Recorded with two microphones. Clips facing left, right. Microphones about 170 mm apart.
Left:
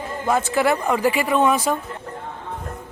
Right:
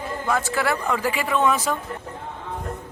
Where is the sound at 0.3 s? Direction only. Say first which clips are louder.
Left 5 dB; 20° left (ahead or behind).